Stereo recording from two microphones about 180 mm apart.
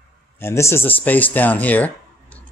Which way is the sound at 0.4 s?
15° left (ahead or behind).